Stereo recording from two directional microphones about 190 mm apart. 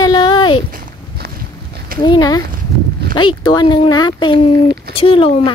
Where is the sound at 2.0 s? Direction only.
20° left (ahead or behind).